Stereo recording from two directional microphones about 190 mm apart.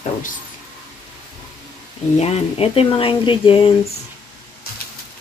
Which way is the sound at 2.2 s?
30° left (ahead or behind).